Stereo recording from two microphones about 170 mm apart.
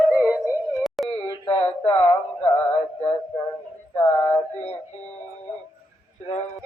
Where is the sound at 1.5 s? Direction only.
35° left (ahead or behind).